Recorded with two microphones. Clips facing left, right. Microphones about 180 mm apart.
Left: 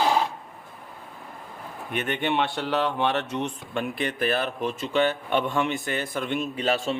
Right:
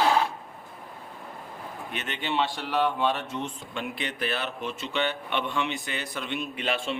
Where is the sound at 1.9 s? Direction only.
55° left (ahead or behind); by 3.5 s 70° left (ahead or behind).